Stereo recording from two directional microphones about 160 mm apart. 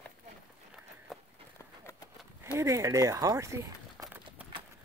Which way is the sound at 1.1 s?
Centre (ahead or behind).